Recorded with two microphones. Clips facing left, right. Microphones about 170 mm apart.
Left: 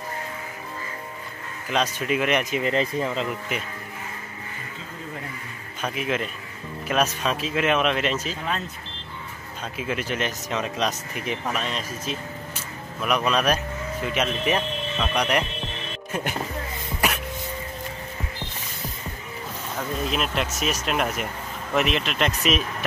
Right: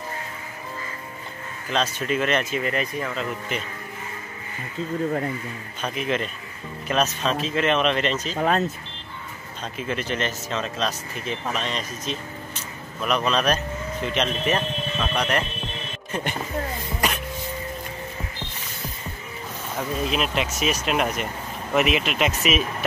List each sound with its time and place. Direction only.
1.7 s speech: 15° left (ahead or behind)
5.8 s speech: 5° left (ahead or behind)
8.4 s speech: 45° right (ahead or behind)
9.6 s speech: 10° left (ahead or behind)
11.4 s speech: 5° left (ahead or behind)
19.8 s speech: centre (ahead or behind)